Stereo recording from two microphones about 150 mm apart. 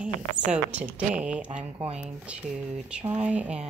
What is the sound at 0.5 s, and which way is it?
Speech, 10° right (ahead or behind).